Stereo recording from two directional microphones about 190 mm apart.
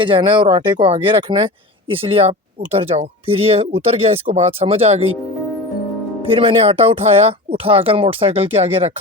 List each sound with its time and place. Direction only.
0.0 s speech: 25° right (ahead or behind)
6.2 s speech: 30° right (ahead or behind)